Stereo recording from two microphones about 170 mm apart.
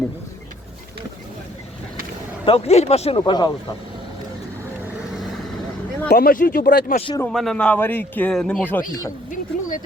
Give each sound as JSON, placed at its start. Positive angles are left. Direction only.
{"t": 2.4, "sound": "speech", "side_deg": 35}
{"t": 6.1, "sound": "speech", "side_deg": 65}
{"t": 7.3, "sound": "speech", "side_deg": 0}
{"t": 9.3, "sound": "a sound", "side_deg": 50}